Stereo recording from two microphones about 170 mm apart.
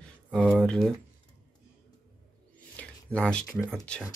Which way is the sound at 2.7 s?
5° left (ahead or behind).